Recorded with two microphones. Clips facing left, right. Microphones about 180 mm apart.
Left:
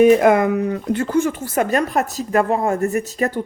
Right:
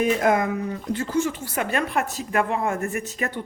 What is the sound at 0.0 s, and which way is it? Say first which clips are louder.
Speech: left 8 dB; 65° left (ahead or behind).